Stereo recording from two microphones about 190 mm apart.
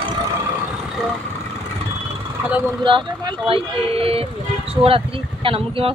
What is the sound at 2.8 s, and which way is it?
Speech, 25° right (ahead or behind).